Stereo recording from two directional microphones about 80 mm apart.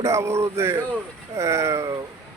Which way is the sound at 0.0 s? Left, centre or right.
Right.